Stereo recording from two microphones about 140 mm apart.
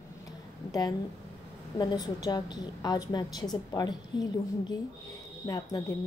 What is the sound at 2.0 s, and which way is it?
A woman's voice, 30° left (ahead or behind).